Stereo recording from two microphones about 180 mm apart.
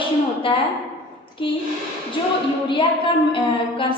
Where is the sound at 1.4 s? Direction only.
30° left (ahead or behind).